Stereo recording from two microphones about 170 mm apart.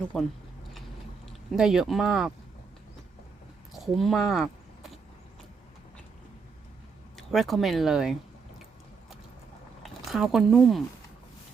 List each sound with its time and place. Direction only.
0.1 s speech: centre (ahead or behind)
1.5 s speech: 5° right (ahead or behind)
3.7 s a sound: centre (ahead or behind)
7.2 s speech: centre (ahead or behind)
9.8 s speech: centre (ahead or behind)